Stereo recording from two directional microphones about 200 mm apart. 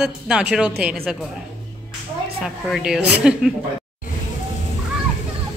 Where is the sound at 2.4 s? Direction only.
Centre (ahead or behind).